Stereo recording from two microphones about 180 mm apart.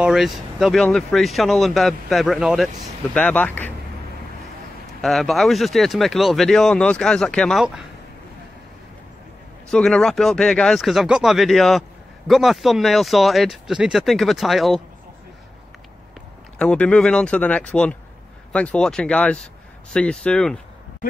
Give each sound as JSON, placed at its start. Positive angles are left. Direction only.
{"t": 0.0, "sound": "speech", "side_deg": 0}
{"t": 3.2, "sound": "speech", "side_deg": 10}
{"t": 5.0, "sound": "speech", "side_deg": 0}
{"t": 9.7, "sound": "speech", "side_deg": 5}
{"t": 16.5, "sound": "speech", "side_deg": 5}